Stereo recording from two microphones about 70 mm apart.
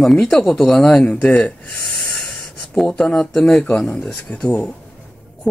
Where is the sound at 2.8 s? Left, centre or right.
Centre.